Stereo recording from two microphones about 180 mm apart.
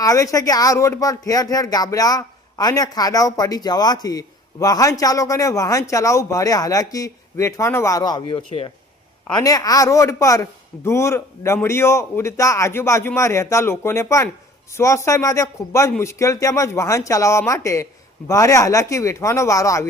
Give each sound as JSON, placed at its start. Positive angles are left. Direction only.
{"t": 0.0, "sound": "speech", "side_deg": 20}